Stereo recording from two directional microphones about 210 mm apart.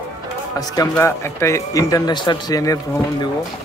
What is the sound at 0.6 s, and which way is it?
Speech, 15° left (ahead or behind).